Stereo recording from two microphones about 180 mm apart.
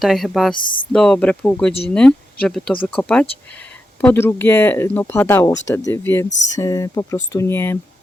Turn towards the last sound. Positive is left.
turn(degrees=15)  # may be behind; listen again after turning